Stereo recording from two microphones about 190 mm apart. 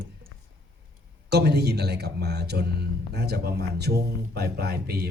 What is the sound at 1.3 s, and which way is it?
Speech, 60° right (ahead or behind).